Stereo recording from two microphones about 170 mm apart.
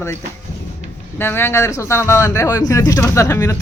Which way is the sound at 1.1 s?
15° left (ahead or behind).